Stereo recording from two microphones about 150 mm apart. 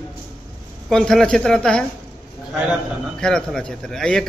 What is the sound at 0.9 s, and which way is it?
Speech, 5° left (ahead or behind).